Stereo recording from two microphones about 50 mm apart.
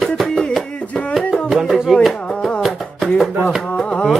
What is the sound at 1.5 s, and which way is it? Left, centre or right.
Music, centre.